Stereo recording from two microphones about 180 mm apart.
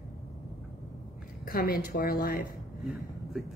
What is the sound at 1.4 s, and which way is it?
A woman's voice, 55° left (ahead or behind).